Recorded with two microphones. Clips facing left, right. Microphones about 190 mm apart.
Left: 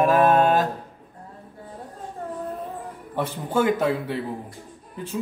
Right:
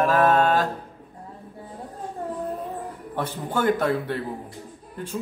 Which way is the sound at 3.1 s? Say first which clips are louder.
Left 3 dB; 10° left (ahead or behind).